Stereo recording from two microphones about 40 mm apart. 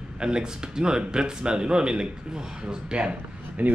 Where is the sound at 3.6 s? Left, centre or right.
Right.